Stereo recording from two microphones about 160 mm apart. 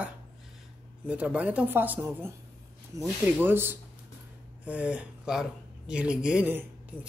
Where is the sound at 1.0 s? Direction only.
10° right (ahead or behind).